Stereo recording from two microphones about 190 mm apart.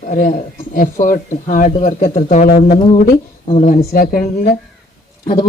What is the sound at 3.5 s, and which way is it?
Speech, 40° left (ahead or behind).